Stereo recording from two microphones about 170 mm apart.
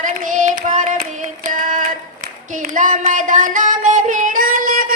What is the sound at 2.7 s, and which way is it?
Child singing, 50° right (ahead or behind).